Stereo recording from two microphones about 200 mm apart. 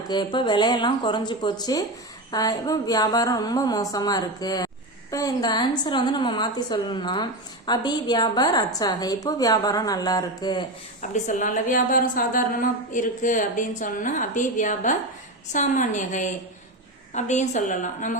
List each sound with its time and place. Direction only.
0.1 s a woman's voice: 20° left (ahead or behind)
11.1 s a woman's voice: 40° left (ahead or behind)